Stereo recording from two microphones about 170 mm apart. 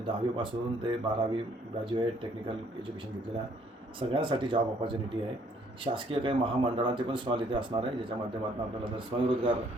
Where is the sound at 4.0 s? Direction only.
30° right (ahead or behind).